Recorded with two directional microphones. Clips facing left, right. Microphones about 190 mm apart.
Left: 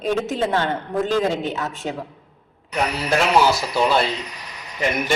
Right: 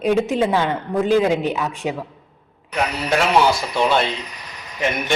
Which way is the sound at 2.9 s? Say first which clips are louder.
Right 1 dB; centre (ahead or behind).